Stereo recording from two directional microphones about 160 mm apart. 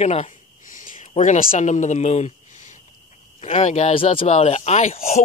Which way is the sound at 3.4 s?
45° left (ahead or behind).